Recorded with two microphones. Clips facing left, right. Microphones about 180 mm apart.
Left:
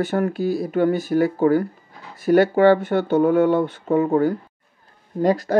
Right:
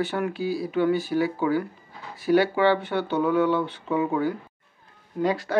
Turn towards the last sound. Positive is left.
turn(degrees=40)  # may be behind; listen again after turning